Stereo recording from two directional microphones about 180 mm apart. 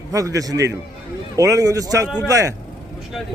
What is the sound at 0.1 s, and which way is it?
A man's voice, 20° right (ahead or behind).